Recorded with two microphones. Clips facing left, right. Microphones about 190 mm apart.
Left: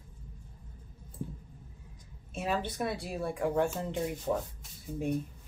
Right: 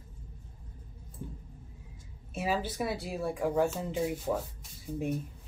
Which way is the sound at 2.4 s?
5° right (ahead or behind).